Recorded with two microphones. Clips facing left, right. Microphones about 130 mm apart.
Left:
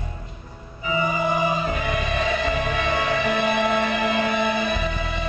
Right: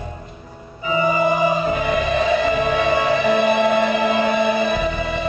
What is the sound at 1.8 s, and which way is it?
Music, 30° right (ahead or behind).